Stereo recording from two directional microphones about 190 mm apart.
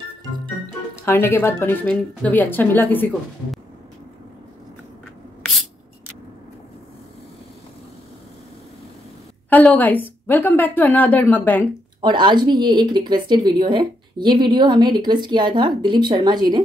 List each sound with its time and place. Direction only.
0.9 s speech: 10° left (ahead or behind)
9.5 s speech: 10° left (ahead or behind)
12.0 s speech: 25° right (ahead or behind)